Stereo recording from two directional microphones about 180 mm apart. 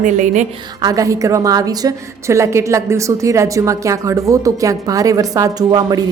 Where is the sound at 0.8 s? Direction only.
20° right (ahead or behind).